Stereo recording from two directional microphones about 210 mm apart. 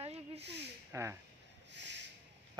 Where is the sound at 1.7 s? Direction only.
55° right (ahead or behind).